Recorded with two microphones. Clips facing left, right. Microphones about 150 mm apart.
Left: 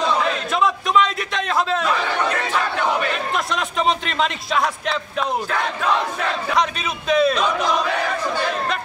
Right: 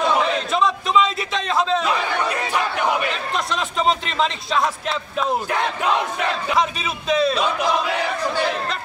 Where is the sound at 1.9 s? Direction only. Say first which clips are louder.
Left 1 dB; 10° right (ahead or behind).